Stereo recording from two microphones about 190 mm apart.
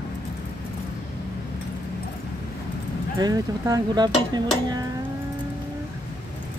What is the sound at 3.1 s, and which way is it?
Speech, 15° right (ahead or behind).